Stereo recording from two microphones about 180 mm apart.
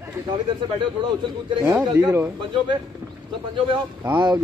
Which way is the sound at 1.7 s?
10° right (ahead or behind).